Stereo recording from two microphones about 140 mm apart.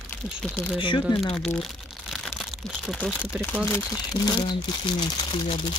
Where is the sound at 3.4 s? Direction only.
15° left (ahead or behind).